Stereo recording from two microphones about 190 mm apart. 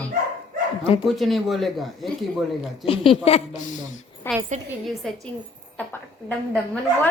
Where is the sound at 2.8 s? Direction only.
30° left (ahead or behind).